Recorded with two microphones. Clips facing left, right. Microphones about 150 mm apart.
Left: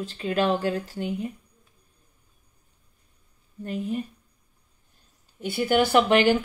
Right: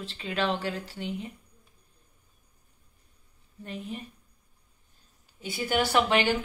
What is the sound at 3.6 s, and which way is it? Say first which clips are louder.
Speech: left 8 dB; 45° left (ahead or behind).